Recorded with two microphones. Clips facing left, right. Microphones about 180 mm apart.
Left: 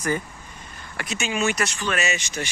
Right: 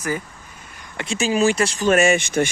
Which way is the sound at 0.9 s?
30° right (ahead or behind).